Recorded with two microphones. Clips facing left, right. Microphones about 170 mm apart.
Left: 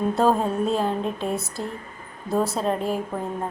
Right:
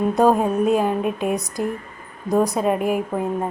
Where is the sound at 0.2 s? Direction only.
15° right (ahead or behind).